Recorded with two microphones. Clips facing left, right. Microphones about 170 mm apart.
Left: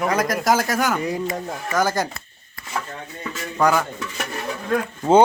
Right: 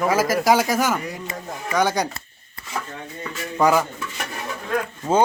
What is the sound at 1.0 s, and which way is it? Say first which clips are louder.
Speech: left 7 dB; 20° left (ahead or behind).